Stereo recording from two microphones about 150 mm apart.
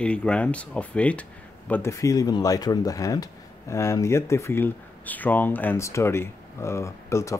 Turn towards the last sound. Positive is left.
turn(degrees=20)  # may be behind; listen again after turning